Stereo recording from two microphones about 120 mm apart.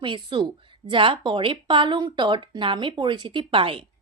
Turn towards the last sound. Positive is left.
turn(degrees=-45)  # may be behind; listen again after turning